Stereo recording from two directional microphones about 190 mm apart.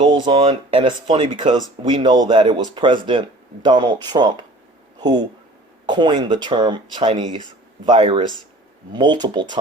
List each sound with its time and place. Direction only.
0.0 s speech: 25° right (ahead or behind)